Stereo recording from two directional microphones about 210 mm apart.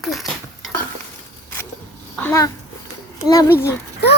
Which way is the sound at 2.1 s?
10° left (ahead or behind).